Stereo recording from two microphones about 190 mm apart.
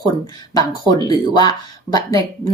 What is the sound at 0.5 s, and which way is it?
Speech, 20° left (ahead or behind).